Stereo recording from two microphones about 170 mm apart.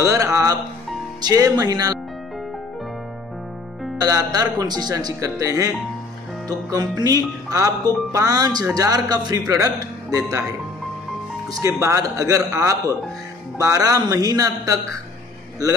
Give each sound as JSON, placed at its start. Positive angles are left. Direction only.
{"t": 0.0, "sound": "a man's voice", "side_deg": -20}
{"t": 4.0, "sound": "a man's voice", "side_deg": -20}
{"t": 11.6, "sound": "a man's voice", "side_deg": -20}